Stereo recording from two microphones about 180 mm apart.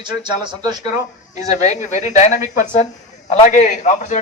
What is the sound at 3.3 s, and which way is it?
Speech, 45° left (ahead or behind).